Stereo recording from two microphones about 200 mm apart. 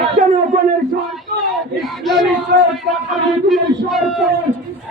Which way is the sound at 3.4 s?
Centre (ahead or behind).